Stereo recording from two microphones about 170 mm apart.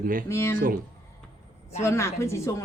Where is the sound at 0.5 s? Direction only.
55° right (ahead or behind).